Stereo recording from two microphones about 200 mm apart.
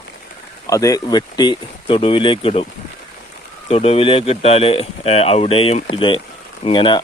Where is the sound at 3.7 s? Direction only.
30° left (ahead or behind).